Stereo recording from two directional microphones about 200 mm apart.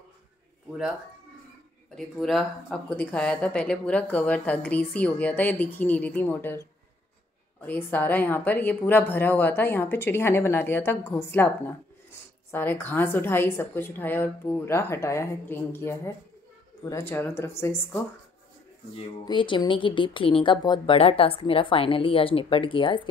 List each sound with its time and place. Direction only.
2.0 s speech: centre (ahead or behind)
18.9 s speech: 25° left (ahead or behind)